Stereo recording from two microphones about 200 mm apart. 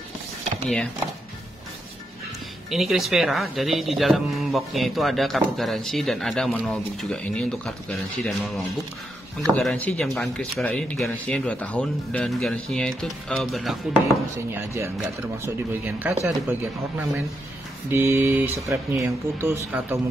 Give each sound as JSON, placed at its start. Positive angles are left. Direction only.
{"t": 2.7, "sound": "speech", "side_deg": 0}
{"t": 14.0, "sound": "speech", "side_deg": -15}
{"t": 17.8, "sound": "speech", "side_deg": -10}